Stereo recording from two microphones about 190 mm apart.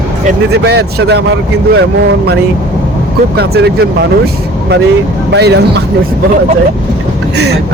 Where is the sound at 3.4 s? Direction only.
55° right (ahead or behind).